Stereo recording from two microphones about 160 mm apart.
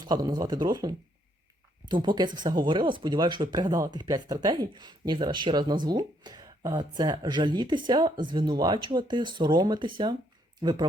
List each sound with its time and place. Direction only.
0.0 s speech: 25° right (ahead or behind)